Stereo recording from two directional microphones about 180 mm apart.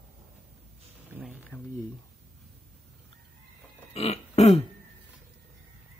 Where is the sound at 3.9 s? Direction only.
35° left (ahead or behind).